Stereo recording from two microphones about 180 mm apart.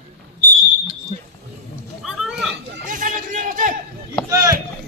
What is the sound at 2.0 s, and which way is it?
Children playing, 5° right (ahead or behind).